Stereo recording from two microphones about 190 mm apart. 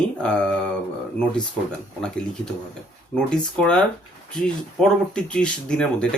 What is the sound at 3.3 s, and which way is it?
Speech, 5° left (ahead or behind).